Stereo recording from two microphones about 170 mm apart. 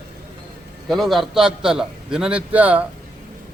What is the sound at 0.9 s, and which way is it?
A man's voice, centre (ahead or behind).